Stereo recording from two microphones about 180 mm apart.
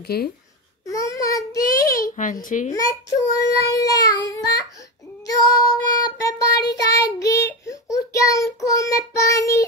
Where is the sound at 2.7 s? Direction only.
20° left (ahead or behind).